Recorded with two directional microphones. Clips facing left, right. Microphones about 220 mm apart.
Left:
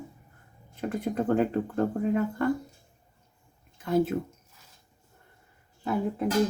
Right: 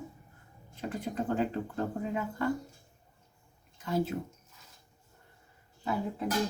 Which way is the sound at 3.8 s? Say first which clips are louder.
Left 6 dB; 55° left (ahead or behind).